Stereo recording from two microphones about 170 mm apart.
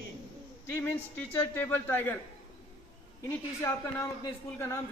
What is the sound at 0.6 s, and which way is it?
A man's voice, 10° left (ahead or behind).